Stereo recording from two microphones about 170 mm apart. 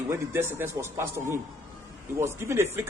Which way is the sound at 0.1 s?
15° right (ahead or behind).